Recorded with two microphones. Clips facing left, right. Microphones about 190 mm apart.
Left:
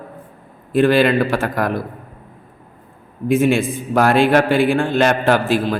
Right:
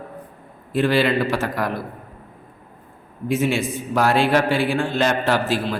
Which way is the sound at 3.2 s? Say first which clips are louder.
Left 6 dB; 55° left (ahead or behind).